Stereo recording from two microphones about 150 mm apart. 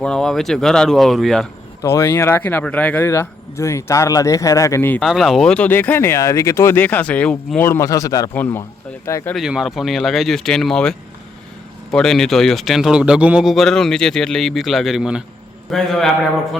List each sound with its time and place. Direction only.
0.0 s a man's voice: 5° left (ahead or behind)
1.8 s speech: 20° left (ahead or behind)
5.0 s speech: centre (ahead or behind)
7.6 s speech: 20° left (ahead or behind)
9.3 s a man's voice: 5° right (ahead or behind)